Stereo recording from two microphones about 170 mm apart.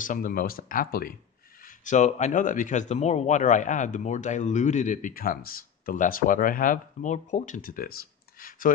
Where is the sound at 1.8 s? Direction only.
45° left (ahead or behind).